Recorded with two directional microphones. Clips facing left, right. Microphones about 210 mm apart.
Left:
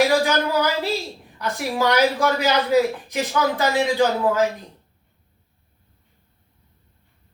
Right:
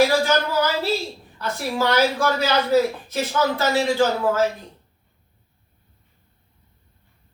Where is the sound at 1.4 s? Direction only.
15° left (ahead or behind).